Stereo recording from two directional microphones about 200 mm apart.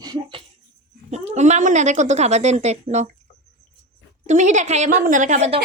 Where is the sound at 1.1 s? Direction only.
35° right (ahead or behind).